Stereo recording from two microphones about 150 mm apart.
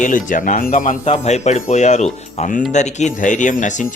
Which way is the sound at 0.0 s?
60° left (ahead or behind).